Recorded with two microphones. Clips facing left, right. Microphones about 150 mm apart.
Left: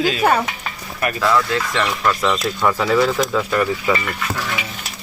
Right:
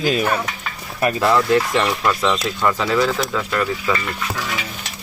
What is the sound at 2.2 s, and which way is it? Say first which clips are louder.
Speech: left 1 dB; centre (ahead or behind).